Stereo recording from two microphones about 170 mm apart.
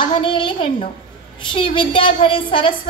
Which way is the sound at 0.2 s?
30° left (ahead or behind).